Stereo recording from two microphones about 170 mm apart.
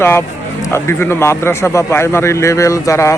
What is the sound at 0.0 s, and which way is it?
A man's voice, 15° left (ahead or behind).